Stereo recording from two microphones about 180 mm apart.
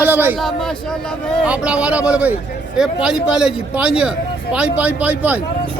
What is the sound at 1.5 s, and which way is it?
A man's voice, 5° right (ahead or behind).